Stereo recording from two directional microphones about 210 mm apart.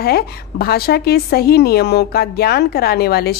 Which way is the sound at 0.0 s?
45° left (ahead or behind).